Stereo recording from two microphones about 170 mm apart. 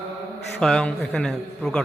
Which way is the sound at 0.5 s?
5° left (ahead or behind).